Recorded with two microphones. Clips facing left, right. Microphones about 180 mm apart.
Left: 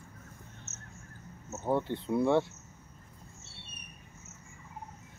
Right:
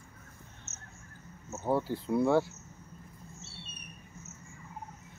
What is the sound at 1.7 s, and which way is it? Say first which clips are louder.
Speech: even; 5° right (ahead or behind).